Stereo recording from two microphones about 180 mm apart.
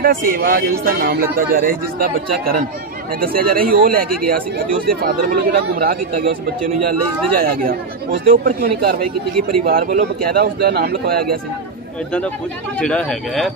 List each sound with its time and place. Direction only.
0.0 s speech: 55° right (ahead or behind)
7.3 s speech: 55° right (ahead or behind)
12.7 s speech: 5° left (ahead or behind)